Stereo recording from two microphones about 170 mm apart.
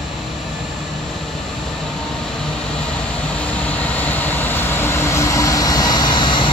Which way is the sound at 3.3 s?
10° left (ahead or behind).